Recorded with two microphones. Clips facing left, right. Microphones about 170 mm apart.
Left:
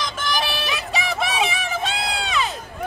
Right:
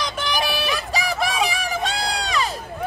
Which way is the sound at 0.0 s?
10° right (ahead or behind).